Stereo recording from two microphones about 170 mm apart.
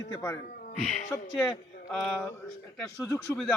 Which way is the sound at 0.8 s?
Centre (ahead or behind).